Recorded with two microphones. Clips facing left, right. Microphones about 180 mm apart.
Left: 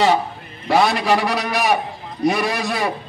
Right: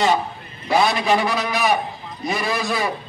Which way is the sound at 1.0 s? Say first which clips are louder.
Left 1 dB; 70° left (ahead or behind).